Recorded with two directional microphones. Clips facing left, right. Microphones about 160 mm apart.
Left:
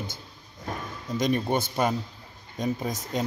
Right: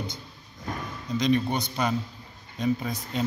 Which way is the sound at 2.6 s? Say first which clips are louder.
Right 2 dB; 45° left (ahead or behind).